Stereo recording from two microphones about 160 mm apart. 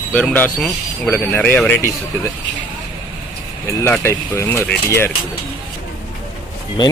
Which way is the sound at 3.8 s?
15° left (ahead or behind).